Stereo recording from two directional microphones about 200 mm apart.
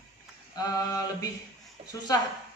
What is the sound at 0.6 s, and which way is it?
Speech, 20° left (ahead or behind).